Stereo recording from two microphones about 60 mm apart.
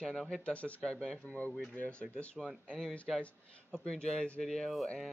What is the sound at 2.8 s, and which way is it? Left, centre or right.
Speech, centre.